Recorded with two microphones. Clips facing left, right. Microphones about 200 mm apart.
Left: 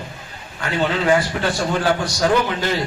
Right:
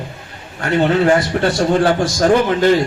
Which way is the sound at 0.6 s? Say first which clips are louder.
Right 6 dB; 45° right (ahead or behind).